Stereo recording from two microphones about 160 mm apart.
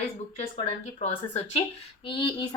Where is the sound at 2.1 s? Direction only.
30° left (ahead or behind).